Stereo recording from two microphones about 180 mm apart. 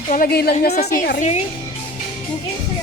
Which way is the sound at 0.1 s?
55° left (ahead or behind).